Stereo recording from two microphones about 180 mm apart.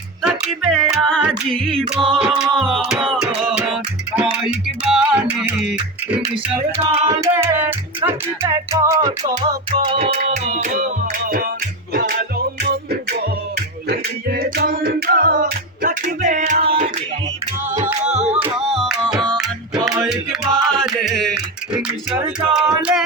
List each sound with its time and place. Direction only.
0.2 s music: 5° right (ahead or behind)
1.8 s music: 30° right (ahead or behind)
2.4 s music: centre (ahead or behind)
4.1 s music: 5° right (ahead or behind)
6.7 s music: 35° right (ahead or behind)
7.2 s music: 15° right (ahead or behind)
9.4 s music: 30° right (ahead or behind); by 11.4 s 50° right (ahead or behind)
13.8 s music: 60° right (ahead or behind); by 16.6 s 40° right (ahead or behind)
19.7 s music: 20° right (ahead or behind)
20.1 s music: 5° right (ahead or behind)
22.5 s music: 5° right (ahead or behind)